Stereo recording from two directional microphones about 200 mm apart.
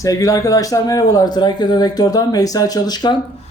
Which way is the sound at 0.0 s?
15° left (ahead or behind).